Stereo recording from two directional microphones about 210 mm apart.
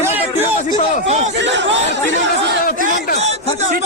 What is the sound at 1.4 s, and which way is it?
Speech, 60° right (ahead or behind).